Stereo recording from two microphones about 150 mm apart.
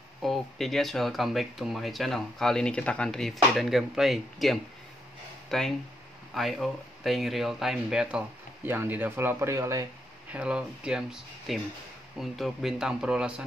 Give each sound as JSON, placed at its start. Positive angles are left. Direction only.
{"t": 0.2, "sound": "speech", "side_deg": 0}
{"t": 10.3, "sound": "speech", "side_deg": -5}